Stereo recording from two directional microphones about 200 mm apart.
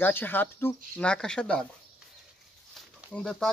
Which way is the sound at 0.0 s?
10° left (ahead or behind).